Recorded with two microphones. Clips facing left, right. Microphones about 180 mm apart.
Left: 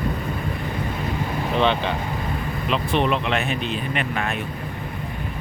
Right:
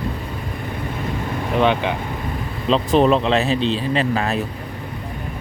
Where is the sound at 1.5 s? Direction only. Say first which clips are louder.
Right 3 dB; 10° right (ahead or behind).